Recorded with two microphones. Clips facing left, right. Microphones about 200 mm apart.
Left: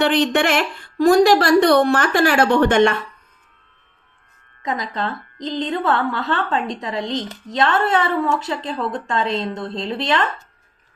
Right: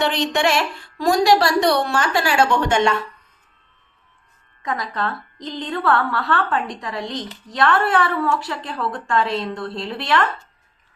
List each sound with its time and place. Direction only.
0.0 s a woman's voice: 55° left (ahead or behind)
4.6 s a woman's voice: 20° left (ahead or behind)